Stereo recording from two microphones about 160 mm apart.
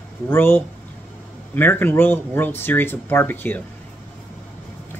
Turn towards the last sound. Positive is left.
turn(degrees=10)  # may be behind; listen again after turning